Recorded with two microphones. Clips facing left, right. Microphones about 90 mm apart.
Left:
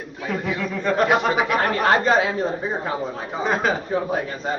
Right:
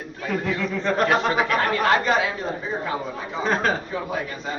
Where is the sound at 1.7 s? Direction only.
35° left (ahead or behind).